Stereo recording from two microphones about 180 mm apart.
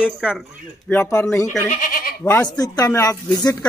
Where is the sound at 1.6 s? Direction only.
45° left (ahead or behind).